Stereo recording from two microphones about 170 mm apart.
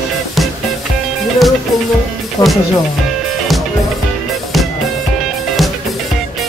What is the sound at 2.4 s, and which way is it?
Music, 20° left (ahead or behind).